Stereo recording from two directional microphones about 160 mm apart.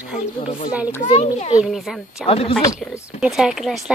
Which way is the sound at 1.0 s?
40° left (ahead or behind).